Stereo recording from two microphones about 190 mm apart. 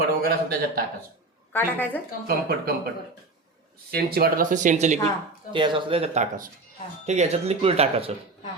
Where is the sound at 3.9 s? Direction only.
55° right (ahead or behind); by 5.0 s 40° right (ahead or behind).